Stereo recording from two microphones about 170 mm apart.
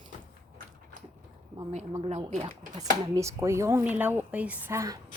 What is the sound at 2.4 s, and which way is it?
Speech, 20° right (ahead or behind).